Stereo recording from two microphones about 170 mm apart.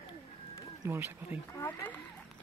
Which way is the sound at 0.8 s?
15° right (ahead or behind).